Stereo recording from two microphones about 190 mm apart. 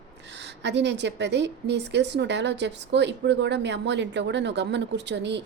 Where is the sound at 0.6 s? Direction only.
65° right (ahead or behind).